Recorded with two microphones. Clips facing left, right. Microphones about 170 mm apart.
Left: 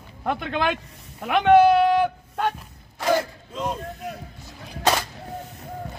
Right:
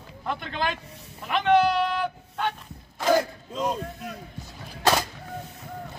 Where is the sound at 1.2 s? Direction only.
55° left (ahead or behind).